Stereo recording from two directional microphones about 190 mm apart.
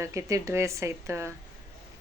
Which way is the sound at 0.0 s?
15° right (ahead or behind).